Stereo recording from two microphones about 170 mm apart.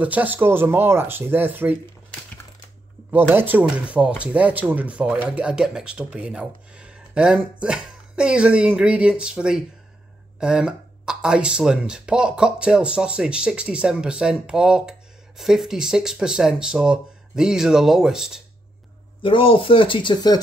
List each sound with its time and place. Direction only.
0.0 s speech: 10° right (ahead or behind)
3.1 s speech: 10° right (ahead or behind)
19.2 s speech: 30° left (ahead or behind)